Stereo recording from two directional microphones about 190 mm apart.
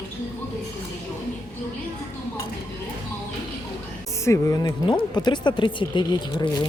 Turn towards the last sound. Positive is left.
turn(degrees=20)  # may be behind; listen again after turning